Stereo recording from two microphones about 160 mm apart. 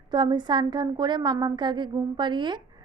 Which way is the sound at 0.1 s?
30° right (ahead or behind).